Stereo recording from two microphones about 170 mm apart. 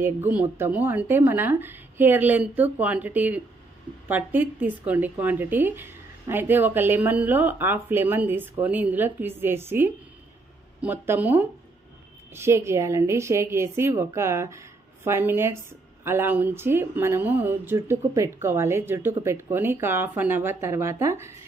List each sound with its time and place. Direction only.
0.0 s a woman's voice: 10° right (ahead or behind)